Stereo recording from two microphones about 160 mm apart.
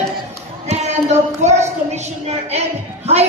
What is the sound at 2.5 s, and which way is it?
Speech, 40° right (ahead or behind).